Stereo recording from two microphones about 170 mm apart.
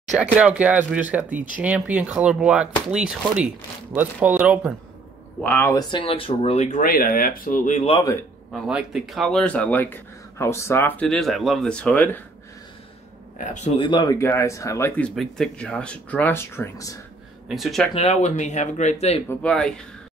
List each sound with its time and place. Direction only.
0.2 s speech: 10° right (ahead or behind)
5.4 s speech: 10° left (ahead or behind)
5.9 s speech: 30° left (ahead or behind)
7.9 s speech: 20° left (ahead or behind)
8.6 s speech: 5° right (ahead or behind)
13.4 s speech: 45° left (ahead or behind)
13.7 s speech: 25° left (ahead or behind)
17.5 s speech: centre (ahead or behind)
17.9 s speech: 40° left (ahead or behind)
19.2 s speech: 5° left (ahead or behind)